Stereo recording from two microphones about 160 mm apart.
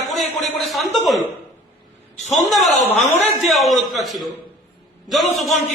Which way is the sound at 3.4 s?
Centre (ahead or behind).